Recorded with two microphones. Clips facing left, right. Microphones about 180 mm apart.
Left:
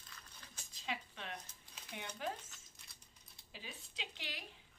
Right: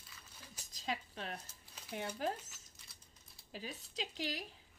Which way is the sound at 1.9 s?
40° right (ahead or behind).